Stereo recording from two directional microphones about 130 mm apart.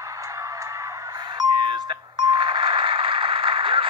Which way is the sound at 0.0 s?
25° right (ahead or behind).